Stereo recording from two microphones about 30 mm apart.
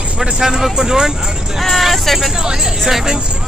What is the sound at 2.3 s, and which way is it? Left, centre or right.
Speech, right.